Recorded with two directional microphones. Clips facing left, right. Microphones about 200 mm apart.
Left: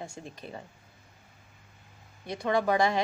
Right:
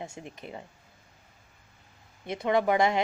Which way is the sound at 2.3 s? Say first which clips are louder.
Right 2 dB; 20° right (ahead or behind).